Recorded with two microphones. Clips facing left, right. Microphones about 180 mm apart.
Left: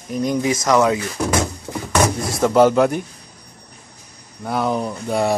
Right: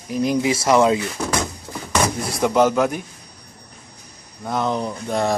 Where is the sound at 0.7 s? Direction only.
25° right (ahead or behind).